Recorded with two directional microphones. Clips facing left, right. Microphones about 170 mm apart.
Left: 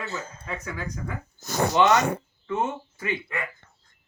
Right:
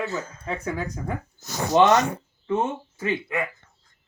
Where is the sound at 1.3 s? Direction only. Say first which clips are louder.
Right 2 dB; 55° left (ahead or behind).